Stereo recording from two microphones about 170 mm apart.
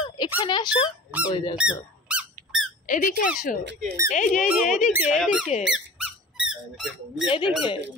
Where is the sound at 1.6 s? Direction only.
5° right (ahead or behind).